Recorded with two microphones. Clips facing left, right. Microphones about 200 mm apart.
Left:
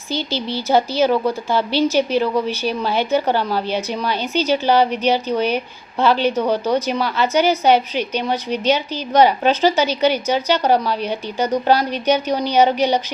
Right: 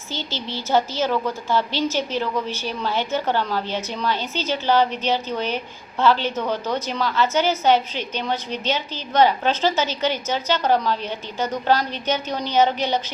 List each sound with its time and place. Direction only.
0.1 s a woman's voice: 15° left (ahead or behind)